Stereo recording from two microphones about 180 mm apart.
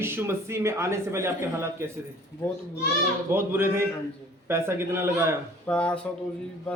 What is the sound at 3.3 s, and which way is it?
A man's voice, 10° right (ahead or behind).